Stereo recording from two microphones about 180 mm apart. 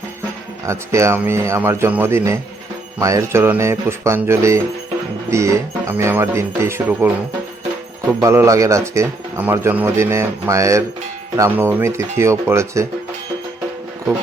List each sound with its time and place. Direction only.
0.6 s speech: 15° right (ahead or behind)
8.2 s speech: 15° right (ahead or behind)